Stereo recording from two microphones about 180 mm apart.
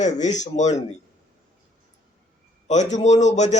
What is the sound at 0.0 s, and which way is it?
Speech, 40° left (ahead or behind).